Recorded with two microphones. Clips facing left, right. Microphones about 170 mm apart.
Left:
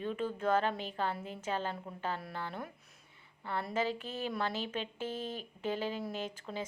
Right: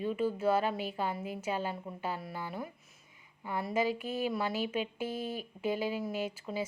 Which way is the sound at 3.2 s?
10° right (ahead or behind).